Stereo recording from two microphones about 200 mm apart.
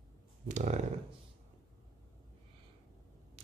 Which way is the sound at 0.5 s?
35° right (ahead or behind).